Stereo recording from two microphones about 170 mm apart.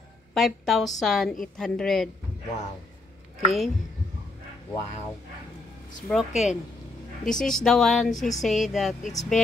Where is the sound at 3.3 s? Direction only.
Centre (ahead or behind).